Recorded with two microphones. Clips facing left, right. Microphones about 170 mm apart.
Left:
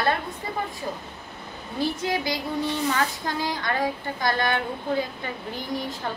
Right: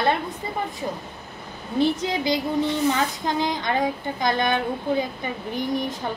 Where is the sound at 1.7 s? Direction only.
20° right (ahead or behind).